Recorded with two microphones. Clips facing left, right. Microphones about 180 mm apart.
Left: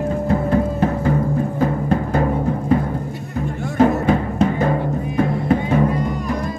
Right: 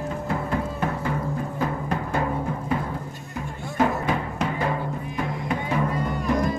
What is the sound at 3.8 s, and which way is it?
Music, 35° left (ahead or behind).